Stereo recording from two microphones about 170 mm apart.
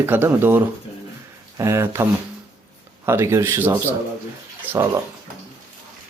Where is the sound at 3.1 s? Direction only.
15° right (ahead or behind).